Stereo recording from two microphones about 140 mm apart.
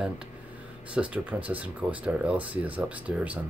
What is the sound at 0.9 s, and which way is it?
Speech, 10° right (ahead or behind).